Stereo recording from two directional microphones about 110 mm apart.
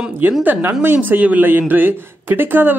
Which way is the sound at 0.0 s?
15° right (ahead or behind).